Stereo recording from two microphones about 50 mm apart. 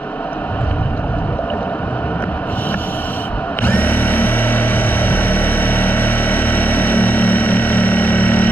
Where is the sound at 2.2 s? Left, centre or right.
Left.